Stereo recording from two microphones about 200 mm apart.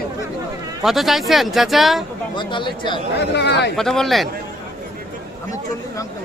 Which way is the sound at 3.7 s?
Centre (ahead or behind).